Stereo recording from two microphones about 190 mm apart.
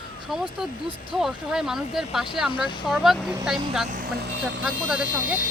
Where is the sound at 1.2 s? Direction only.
Centre (ahead or behind).